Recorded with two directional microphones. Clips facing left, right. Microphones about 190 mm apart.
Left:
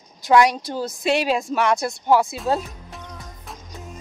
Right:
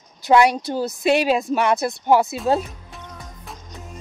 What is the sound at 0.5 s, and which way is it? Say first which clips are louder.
Speech: right 3 dB; 5° right (ahead or behind).